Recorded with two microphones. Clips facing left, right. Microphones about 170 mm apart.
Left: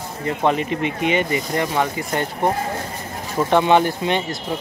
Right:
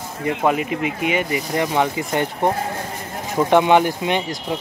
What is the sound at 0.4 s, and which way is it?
Speech, 5° right (ahead or behind).